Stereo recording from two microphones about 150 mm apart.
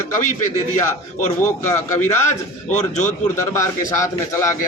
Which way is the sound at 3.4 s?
20° left (ahead or behind).